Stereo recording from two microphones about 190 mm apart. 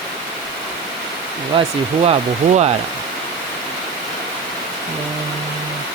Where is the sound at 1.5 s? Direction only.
25° right (ahead or behind).